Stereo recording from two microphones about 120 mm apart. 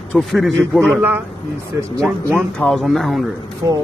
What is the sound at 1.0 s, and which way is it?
Speech, 15° right (ahead or behind).